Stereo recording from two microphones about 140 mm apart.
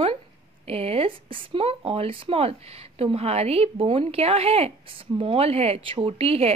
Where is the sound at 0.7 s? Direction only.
45° right (ahead or behind).